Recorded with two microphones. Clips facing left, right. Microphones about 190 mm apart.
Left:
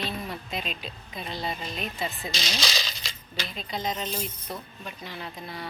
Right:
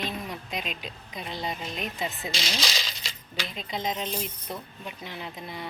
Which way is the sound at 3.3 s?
15° right (ahead or behind).